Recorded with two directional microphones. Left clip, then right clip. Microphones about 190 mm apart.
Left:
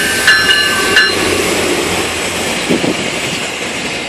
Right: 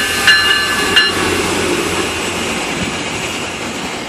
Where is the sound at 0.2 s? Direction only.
45° right (ahead or behind).